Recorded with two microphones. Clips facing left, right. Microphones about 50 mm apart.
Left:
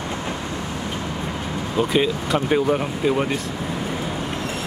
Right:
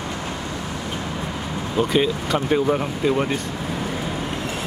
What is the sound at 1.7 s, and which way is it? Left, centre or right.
Speech, centre.